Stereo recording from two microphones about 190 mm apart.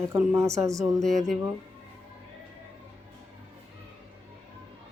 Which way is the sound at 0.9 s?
Centre (ahead or behind).